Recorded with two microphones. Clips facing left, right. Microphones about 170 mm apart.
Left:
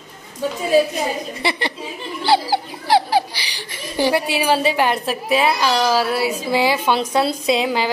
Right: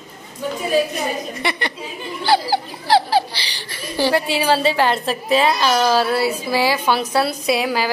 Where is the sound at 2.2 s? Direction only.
25° left (ahead or behind).